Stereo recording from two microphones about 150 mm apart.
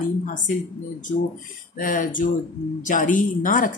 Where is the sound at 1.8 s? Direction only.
60° left (ahead or behind).